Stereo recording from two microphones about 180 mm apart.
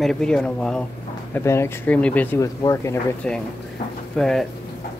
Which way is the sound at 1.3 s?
15° left (ahead or behind).